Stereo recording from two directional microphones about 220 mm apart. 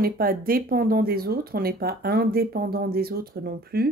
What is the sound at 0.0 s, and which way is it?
A woman's voice, 40° right (ahead or behind).